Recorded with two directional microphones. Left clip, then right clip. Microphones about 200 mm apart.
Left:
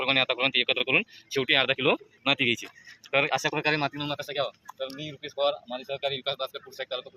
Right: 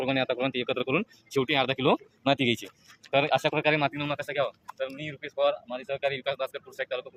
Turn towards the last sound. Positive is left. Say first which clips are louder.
# right 2 dB
turn(degrees=-5)  # may be behind; listen again after turning